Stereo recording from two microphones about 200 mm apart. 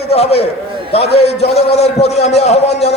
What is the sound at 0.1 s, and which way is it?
A man's voice, 30° left (ahead or behind).